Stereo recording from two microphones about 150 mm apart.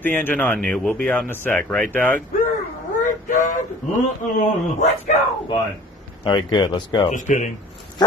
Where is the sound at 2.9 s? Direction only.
60° left (ahead or behind).